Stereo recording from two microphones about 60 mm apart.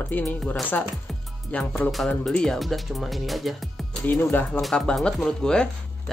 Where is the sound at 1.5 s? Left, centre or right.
Left.